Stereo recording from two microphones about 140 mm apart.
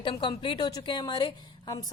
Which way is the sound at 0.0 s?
35° left (ahead or behind).